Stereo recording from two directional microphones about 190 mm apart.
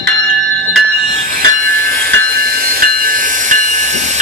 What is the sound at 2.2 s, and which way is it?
Hiss, 50° right (ahead or behind).